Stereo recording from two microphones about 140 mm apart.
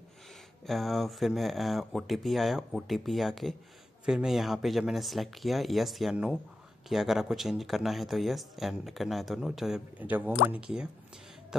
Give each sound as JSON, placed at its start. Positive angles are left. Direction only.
{"t": 0.7, "sound": "speech", "side_deg": 0}